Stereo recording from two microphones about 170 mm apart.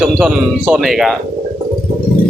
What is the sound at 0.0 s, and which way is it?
Speech, 5° right (ahead or behind).